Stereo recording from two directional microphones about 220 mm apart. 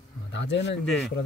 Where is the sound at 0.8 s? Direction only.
5° left (ahead or behind).